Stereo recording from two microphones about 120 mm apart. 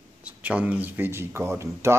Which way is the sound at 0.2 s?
10° right (ahead or behind).